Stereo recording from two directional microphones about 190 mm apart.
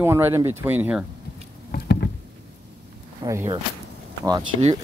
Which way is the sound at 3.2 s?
15° right (ahead or behind).